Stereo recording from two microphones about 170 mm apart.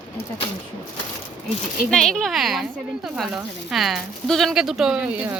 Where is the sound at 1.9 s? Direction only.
Centre (ahead or behind).